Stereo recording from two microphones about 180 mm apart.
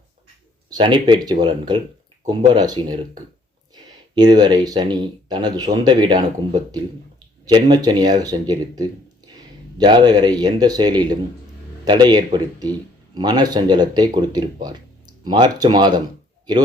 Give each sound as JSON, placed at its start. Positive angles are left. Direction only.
{"t": 0.7, "sound": "speech", "side_deg": -25}
{"t": 4.1, "sound": "speech", "side_deg": -25}
{"t": 7.4, "sound": "speech", "side_deg": -25}